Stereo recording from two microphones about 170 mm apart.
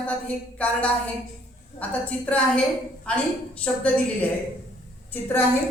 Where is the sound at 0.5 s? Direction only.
10° left (ahead or behind).